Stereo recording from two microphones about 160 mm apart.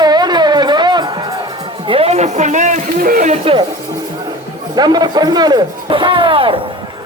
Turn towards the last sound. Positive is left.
turn(degrees=-35)  # may be behind; listen again after turning